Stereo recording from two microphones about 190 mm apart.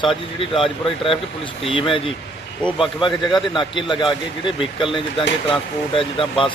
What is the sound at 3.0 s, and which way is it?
Speech, 25° left (ahead or behind).